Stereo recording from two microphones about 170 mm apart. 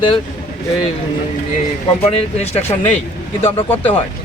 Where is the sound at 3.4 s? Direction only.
35° left (ahead or behind).